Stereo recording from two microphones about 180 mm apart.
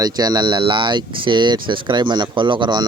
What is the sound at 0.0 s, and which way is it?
Speech, 20° right (ahead or behind).